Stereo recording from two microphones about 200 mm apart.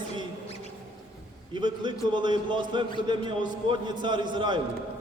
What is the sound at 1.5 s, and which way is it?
A man's voice, 25° right (ahead or behind).